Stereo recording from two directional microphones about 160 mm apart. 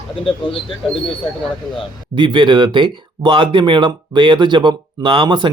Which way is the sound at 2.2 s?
30° right (ahead or behind).